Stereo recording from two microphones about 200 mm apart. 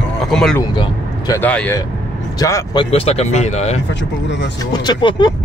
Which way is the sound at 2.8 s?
30° left (ahead or behind).